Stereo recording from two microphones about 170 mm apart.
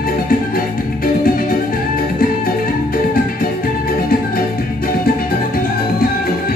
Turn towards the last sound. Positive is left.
turn(degrees=60)  # may be behind; listen again after turning